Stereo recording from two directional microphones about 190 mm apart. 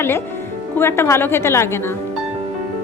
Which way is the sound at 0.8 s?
10° left (ahead or behind).